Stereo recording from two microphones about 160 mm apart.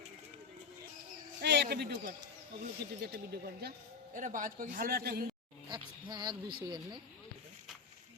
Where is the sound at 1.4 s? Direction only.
90° right.